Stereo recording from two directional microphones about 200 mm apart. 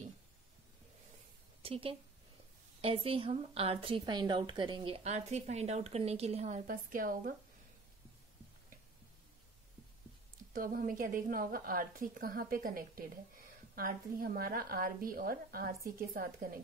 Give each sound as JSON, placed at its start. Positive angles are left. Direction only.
{"t": 1.6, "sound": "a woman's voice", "side_deg": -30}
{"t": 10.5, "sound": "a woman's voice", "side_deg": -45}